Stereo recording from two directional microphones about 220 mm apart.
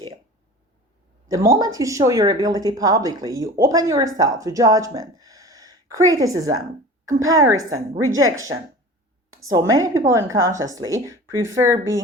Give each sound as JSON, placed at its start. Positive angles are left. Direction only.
{"t": 1.3, "sound": "speech", "side_deg": -15}
{"t": 7.7, "sound": "a woman's voice", "side_deg": -70}
{"t": 9.5, "sound": "speech", "side_deg": -15}